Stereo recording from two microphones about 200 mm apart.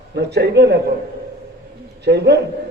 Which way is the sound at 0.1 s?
55° right (ahead or behind).